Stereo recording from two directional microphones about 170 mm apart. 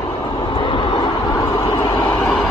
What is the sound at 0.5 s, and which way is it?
Vehicle, 30° left (ahead or behind).